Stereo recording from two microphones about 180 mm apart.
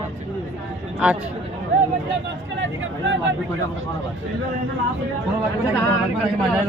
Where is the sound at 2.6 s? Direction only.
90° right.